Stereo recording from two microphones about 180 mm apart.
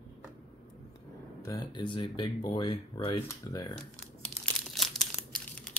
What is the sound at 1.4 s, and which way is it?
Speech, 20° left (ahead or behind).